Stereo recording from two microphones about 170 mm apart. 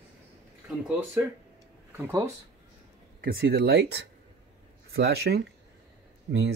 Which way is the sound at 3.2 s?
60° right (ahead or behind).